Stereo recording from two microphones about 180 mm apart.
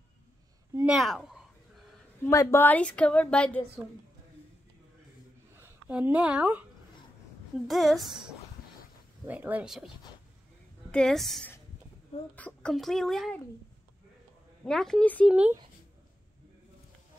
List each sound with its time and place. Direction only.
0.7 s speech: 5° right (ahead or behind)
2.2 s a woman's voice: 15° left (ahead or behind)
5.6 s speech: 10° right (ahead or behind)
7.6 s a child's voice: centre (ahead or behind)
10.9 s a child's voice: 5° left (ahead or behind)
14.6 s a child's voice: 5° left (ahead or behind)
15.3 s speech: 10° right (ahead or behind)